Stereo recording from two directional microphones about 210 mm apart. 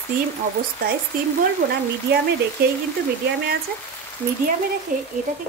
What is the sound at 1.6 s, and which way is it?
Speech, 50° right (ahead or behind).